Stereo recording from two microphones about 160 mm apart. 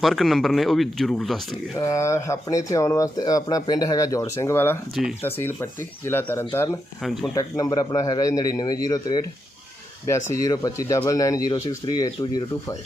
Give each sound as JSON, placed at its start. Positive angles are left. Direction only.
{"t": 0.0, "sound": "speech", "side_deg": 0}
{"t": 1.8, "sound": "speech", "side_deg": 20}